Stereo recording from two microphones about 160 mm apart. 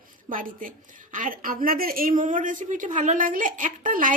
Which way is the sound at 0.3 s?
60° right (ahead or behind).